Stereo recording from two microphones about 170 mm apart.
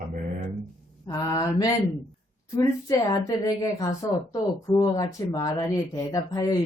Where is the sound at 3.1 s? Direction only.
20° left (ahead or behind).